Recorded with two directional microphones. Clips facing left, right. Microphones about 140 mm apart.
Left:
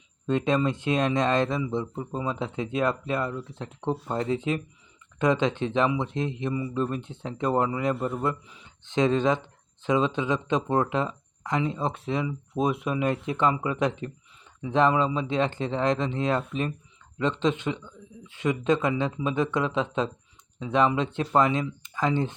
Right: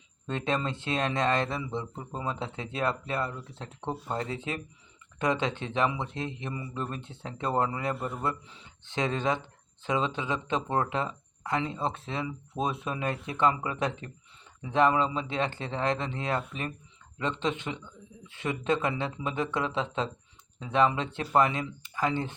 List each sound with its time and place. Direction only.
0.3 s speech: 20° left (ahead or behind)